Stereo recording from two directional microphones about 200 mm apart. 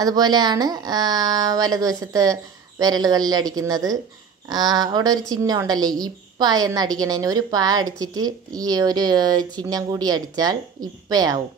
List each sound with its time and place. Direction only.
0.0 s a woman's voice: 20° right (ahead or behind)